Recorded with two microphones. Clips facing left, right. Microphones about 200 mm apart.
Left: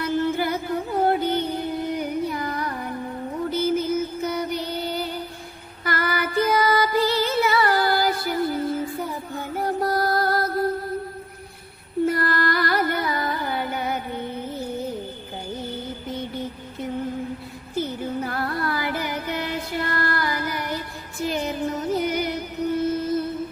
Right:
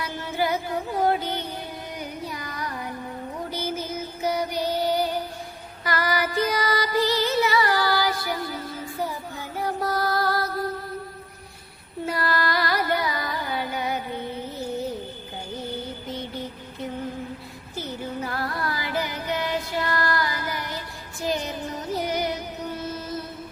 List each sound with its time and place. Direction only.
0.0 s music: 55° left (ahead or behind)
12.0 s carnatic music: 50° left (ahead or behind)
17.7 s music: 50° left (ahead or behind)